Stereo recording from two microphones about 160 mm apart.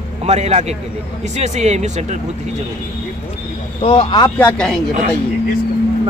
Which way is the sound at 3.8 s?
30° left (ahead or behind).